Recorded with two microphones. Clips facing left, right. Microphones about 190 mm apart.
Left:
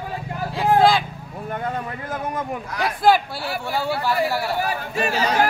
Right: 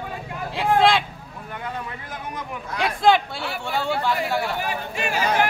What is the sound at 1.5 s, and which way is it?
Speech, 45° left (ahead or behind).